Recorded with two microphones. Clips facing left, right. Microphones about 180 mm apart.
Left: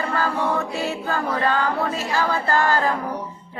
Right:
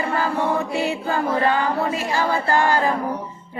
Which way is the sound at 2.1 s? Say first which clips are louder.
Right 1 dB; 15° right (ahead or behind).